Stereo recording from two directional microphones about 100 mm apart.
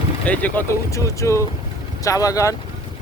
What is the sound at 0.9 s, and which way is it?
Speech, 30° left (ahead or behind).